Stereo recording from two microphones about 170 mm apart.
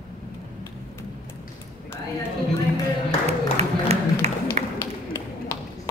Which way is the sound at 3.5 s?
40° right (ahead or behind).